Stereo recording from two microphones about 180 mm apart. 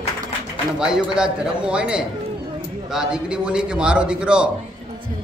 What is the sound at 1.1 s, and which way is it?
A man's voice, 5° right (ahead or behind).